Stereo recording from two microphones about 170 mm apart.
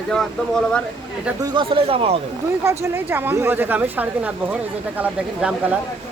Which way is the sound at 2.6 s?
15° right (ahead or behind).